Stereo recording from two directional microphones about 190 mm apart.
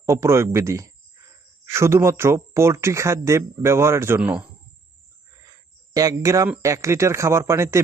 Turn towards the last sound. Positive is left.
turn(degrees=-15)  # may be behind; listen again after turning